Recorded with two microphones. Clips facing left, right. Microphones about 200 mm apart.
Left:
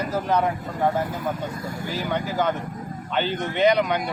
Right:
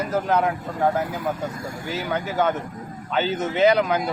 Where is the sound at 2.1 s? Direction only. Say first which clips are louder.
Right 2 dB; 5° right (ahead or behind).